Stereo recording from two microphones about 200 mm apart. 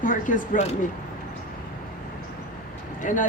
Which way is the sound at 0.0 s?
40° left (ahead or behind).